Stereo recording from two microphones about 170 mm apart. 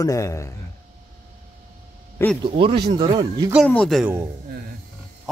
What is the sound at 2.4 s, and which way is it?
Speech, 30° right (ahead or behind).